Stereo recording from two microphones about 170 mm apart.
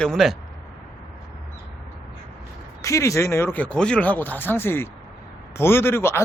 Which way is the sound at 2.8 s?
20° left (ahead or behind).